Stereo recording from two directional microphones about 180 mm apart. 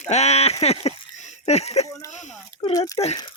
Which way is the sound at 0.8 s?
40° left (ahead or behind).